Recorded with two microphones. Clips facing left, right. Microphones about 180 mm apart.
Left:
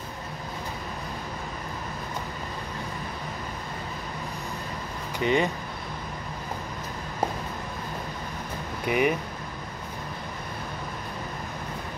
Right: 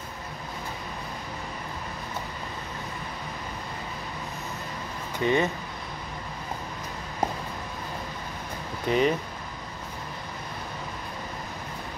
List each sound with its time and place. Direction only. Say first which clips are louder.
5.2 s speech: even; 15° left (ahead or behind)
8.8 s speech: right 1 dB; 15° left (ahead or behind)